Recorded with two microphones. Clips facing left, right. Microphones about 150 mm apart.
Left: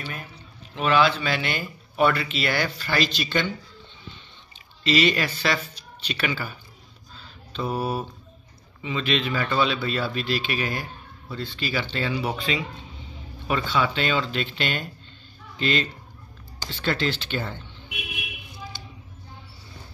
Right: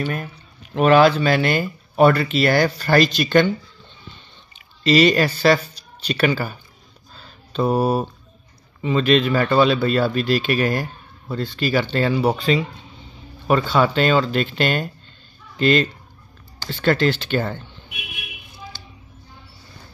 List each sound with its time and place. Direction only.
0.0 s speech: 50° right (ahead or behind)
4.8 s speech: 40° right (ahead or behind)
7.2 s a sound: 40° right (ahead or behind)
8.8 s speech: 45° right (ahead or behind)